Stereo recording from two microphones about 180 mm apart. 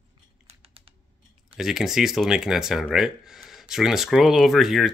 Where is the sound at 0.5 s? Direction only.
30° right (ahead or behind).